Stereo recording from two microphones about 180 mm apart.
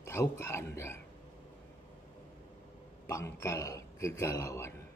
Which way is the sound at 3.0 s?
15° left (ahead or behind).